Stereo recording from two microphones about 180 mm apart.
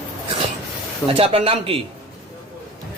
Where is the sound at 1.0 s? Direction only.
30° right (ahead or behind).